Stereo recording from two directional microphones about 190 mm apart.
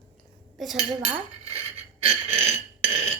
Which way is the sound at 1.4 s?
35° right (ahead or behind).